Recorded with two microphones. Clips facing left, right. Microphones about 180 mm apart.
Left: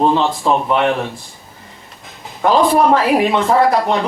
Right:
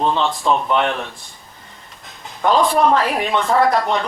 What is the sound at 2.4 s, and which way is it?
Speech, 5° left (ahead or behind).